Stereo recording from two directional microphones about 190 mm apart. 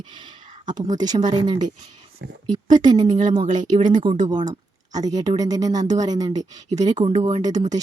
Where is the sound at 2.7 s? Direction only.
20° right (ahead or behind).